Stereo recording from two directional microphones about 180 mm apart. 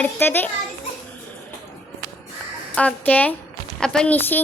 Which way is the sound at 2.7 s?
5° left (ahead or behind).